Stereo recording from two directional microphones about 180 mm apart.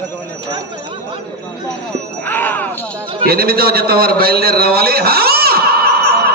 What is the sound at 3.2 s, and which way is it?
A man's voice, 55° right (ahead or behind).